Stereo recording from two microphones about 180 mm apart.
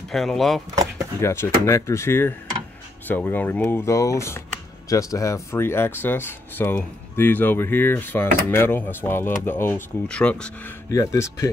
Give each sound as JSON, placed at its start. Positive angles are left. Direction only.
{"t": 0.1, "sound": "speech", "side_deg": 0}
{"t": 1.2, "sound": "speech", "side_deg": 15}
{"t": 10.9, "sound": "speech", "side_deg": 15}